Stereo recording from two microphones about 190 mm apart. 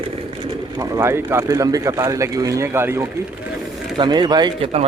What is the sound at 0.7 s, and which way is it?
Speech, 20° right (ahead or behind).